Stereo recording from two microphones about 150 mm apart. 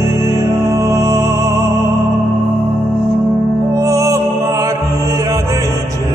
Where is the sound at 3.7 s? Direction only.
20° right (ahead or behind).